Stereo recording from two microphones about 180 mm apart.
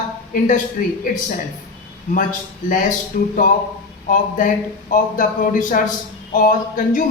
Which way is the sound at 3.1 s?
50° left (ahead or behind).